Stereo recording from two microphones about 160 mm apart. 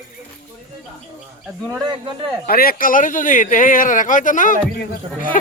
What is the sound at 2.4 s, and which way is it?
Speech, 65° left (ahead or behind).